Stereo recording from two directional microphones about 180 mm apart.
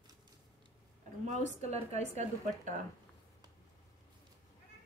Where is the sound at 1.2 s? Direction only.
40° right (ahead or behind).